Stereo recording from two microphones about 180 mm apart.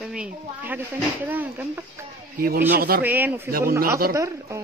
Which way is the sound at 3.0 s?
10° right (ahead or behind).